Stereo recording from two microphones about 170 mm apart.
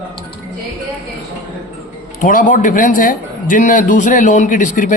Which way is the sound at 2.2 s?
50° left (ahead or behind).